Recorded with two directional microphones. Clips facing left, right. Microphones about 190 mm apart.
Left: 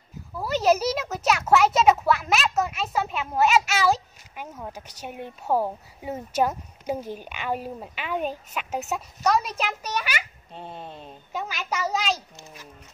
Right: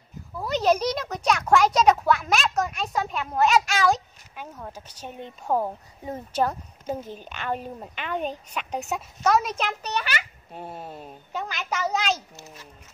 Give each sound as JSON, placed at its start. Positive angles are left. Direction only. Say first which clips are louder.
{"t": 0.4, "sound": "speech", "louder": "left 1 dB", "side_deg": 5}
{"t": 10.5, "sound": "speech", "louder": "right 1 dB", "side_deg": -10}
{"t": 11.3, "sound": "speech", "louder": "even", "side_deg": 5}